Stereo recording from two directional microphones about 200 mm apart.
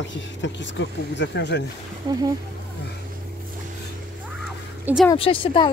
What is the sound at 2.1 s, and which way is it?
Speech, 20° right (ahead or behind).